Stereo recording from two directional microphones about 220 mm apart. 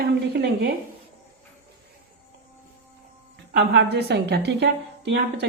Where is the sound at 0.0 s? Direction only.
45° right (ahead or behind).